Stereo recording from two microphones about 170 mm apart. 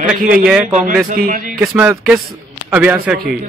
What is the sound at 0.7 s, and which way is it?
Speech, 50° right (ahead or behind).